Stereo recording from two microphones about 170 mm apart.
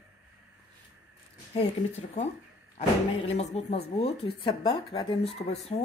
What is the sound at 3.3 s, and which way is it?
Speech, 40° left (ahead or behind).